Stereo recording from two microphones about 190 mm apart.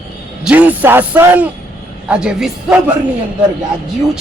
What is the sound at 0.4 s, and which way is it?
A woman's voice, 10° right (ahead or behind).